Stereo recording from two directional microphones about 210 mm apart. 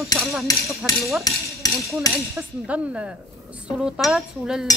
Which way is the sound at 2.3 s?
5° right (ahead or behind).